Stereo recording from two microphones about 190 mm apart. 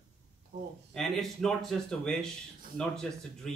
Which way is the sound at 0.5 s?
40° right (ahead or behind).